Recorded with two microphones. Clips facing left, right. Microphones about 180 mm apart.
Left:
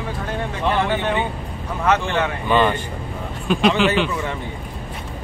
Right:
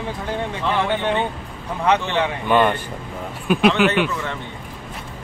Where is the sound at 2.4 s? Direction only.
Centre (ahead or behind).